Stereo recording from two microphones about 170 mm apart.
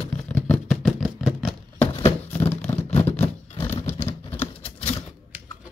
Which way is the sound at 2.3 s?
10° left (ahead or behind).